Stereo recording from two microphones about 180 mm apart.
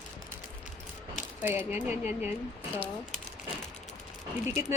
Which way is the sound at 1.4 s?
10° right (ahead or behind).